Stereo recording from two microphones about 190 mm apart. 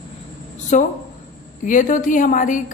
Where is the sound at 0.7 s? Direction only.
40° left (ahead or behind).